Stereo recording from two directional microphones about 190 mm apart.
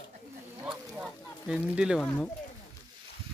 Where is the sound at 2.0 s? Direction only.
10° left (ahead or behind).